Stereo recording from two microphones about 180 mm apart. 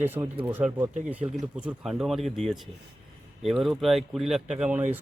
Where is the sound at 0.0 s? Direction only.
10° right (ahead or behind).